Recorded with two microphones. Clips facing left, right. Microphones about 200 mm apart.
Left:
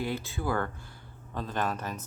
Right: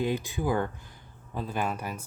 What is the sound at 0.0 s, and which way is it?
Speech, 15° right (ahead or behind).